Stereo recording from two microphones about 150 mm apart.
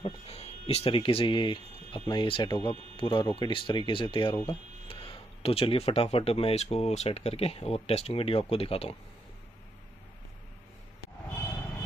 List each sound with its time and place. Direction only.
0.0 s speech: 45° left (ahead or behind)